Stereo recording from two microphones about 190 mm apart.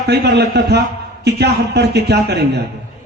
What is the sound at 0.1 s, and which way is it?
A man's voice, 60° right (ahead or behind).